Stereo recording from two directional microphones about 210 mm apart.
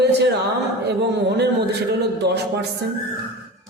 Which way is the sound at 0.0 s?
55° right (ahead or behind).